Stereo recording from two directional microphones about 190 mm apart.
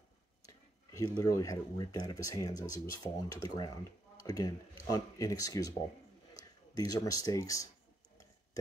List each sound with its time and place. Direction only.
0.5 s speech: 15° left (ahead or behind)